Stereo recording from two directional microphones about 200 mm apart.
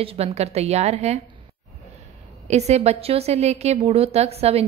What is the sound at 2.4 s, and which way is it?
A woman's voice, 35° right (ahead or behind).